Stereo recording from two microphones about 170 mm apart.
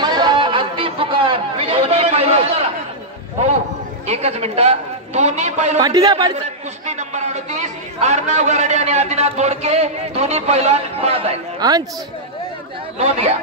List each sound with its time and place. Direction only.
0.0 s chatter: 25° right (ahead or behind)
4.1 s a man's voice: 40° right (ahead or behind)
5.8 s speech: 20° right (ahead or behind)
6.9 s a man's voice: 40° right (ahead or behind)
11.6 s speech: 25° right (ahead or behind)